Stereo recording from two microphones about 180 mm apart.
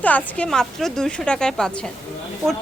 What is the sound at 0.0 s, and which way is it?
A woman's voice, 5° left (ahead or behind).